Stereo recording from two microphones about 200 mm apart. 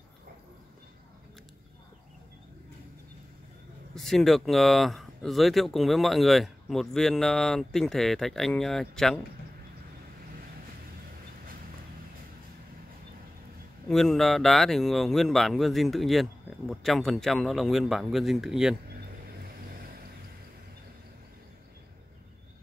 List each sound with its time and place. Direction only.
3.9 s speech: centre (ahead or behind)
13.8 s speech: centre (ahead or behind)
18.9 s vehicle: 50° right (ahead or behind)